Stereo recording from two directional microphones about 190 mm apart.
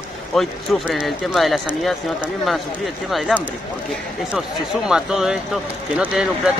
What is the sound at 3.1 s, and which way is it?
Speech, 5° right (ahead or behind).